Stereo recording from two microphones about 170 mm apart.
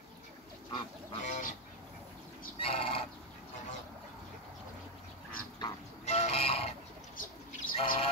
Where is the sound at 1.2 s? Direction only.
50° left (ahead or behind).